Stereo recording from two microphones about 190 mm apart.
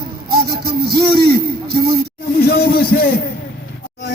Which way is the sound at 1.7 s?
55° right (ahead or behind).